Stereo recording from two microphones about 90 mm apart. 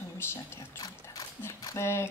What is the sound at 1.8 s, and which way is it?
Speech, 30° left (ahead or behind).